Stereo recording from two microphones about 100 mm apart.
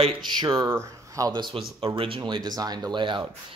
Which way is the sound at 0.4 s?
35° right (ahead or behind).